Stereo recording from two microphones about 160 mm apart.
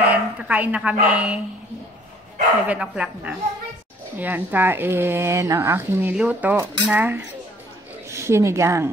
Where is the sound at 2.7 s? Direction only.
5° right (ahead or behind).